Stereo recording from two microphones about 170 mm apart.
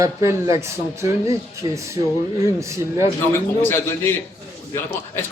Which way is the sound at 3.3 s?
15° left (ahead or behind).